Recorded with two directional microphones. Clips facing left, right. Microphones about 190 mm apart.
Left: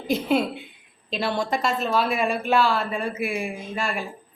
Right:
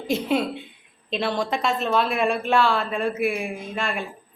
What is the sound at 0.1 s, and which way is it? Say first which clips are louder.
Speech: left 1 dB; 5° left (ahead or behind).